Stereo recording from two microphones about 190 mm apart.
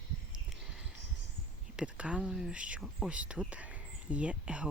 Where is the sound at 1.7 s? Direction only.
5° right (ahead or behind).